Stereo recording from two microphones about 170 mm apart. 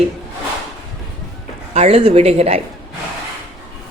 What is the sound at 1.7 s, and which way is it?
Speech, 35° right (ahead or behind).